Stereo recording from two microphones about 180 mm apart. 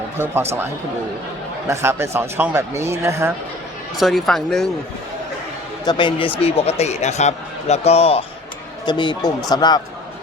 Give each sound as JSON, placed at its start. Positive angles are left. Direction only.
{"t": 1.6, "sound": "speech", "side_deg": -15}
{"t": 3.9, "sound": "speech", "side_deg": 0}
{"t": 5.8, "sound": "a man's voice", "side_deg": 25}